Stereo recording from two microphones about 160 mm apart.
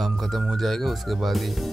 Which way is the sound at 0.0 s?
Centre (ahead or behind).